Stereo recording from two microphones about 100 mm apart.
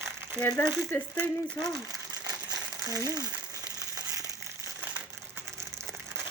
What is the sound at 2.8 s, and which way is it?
Speech, 35° right (ahead or behind).